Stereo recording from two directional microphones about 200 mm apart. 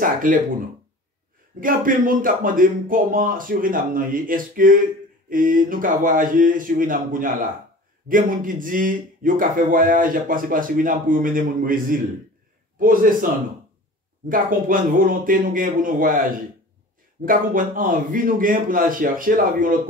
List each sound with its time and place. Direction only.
0.0 s speech: 45° right (ahead or behind)
1.6 s speech: 45° right (ahead or behind)
14.3 s speech: 45° right (ahead or behind)